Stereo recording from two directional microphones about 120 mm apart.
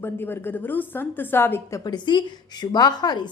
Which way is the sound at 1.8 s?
35° left (ahead or behind).